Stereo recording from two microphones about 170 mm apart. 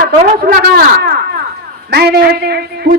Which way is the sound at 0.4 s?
65° right (ahead or behind).